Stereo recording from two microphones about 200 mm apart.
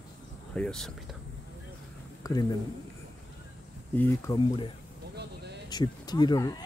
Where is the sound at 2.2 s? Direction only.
20° left (ahead or behind).